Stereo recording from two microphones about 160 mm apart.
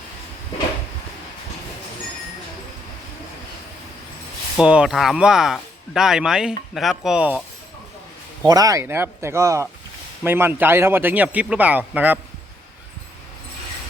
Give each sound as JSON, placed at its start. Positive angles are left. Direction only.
{"t": 4.5, "sound": "speech", "side_deg": -5}
{"t": 8.4, "sound": "a man's voice", "side_deg": -20}